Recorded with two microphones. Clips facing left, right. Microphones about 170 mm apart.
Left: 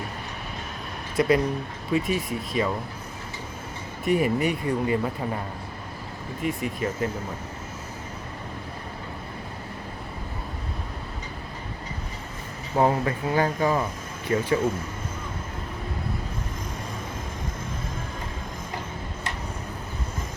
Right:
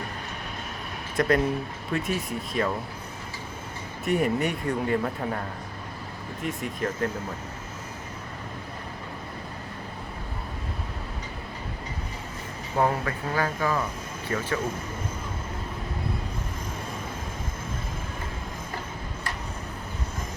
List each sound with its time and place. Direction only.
1.1 s speech: 5° left (ahead or behind)
4.0 s speech: centre (ahead or behind)
6.4 s speech: centre (ahead or behind)
12.7 s speech: 20° left (ahead or behind)